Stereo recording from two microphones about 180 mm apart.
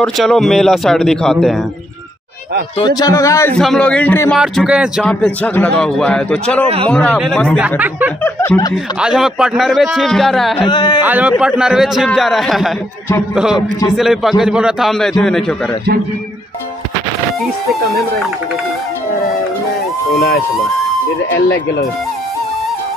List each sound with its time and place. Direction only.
0.0 s a man's voice: centre (ahead or behind)
2.8 s a man's voice: 20° left (ahead or behind)
3.5 s a man's voice: 5° left (ahead or behind)
4.4 s a man's voice: 5° right (ahead or behind)
5.0 s a man's voice: 5° left (ahead or behind)
8.2 s a man's voice: 15° left (ahead or behind)
8.7 s a man's voice: 5° right (ahead or behind)
10.6 s speech: 25° left (ahead or behind)
11.0 s a man's voice: 10° right (ahead or behind)